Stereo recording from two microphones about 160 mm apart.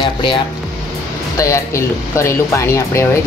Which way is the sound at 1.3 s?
20° left (ahead or behind).